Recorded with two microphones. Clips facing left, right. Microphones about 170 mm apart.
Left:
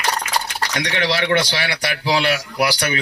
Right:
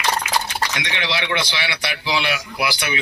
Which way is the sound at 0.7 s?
45° left (ahead or behind).